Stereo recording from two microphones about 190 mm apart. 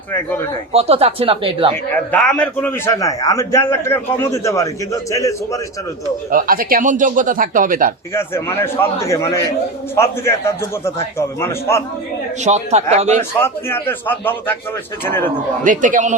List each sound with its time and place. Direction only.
0.1 s a man's voice: 10° left (ahead or behind)
0.7 s speech: 30° right (ahead or behind)
2.1 s a man's voice: 5° left (ahead or behind)
6.3 s speech: 50° right (ahead or behind)
8.1 s a man's voice: 15° left (ahead or behind)
12.4 s speech: 35° right (ahead or behind)
13.4 s a man's voice: 10° left (ahead or behind)
15.6 s speech: 45° right (ahead or behind)